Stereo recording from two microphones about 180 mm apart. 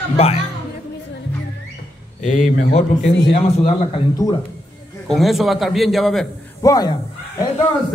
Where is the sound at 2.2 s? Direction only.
40° left (ahead or behind); by 4.3 s 25° left (ahead or behind).